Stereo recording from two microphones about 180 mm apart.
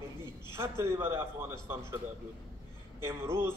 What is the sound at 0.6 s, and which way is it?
A man's voice, 15° right (ahead or behind).